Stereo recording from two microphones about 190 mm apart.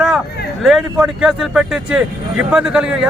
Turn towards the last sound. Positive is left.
turn(degrees=-5)  # may be behind; listen again after turning